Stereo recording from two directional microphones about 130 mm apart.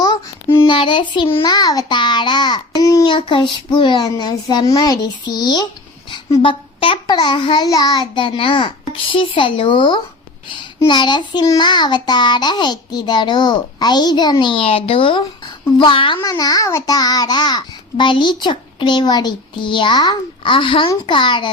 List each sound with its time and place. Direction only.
0.7 s child singing: 40° left (ahead or behind)
1.5 s a child's voice: 30° left (ahead or behind)
3.1 s a child's voice: 40° left (ahead or behind)
16.2 s a child's voice: 30° left (ahead or behind)